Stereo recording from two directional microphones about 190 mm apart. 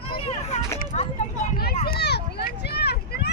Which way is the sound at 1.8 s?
60° left (ahead or behind).